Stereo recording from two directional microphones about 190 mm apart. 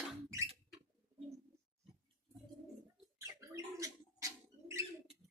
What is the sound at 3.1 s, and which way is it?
Bird, 15° right (ahead or behind).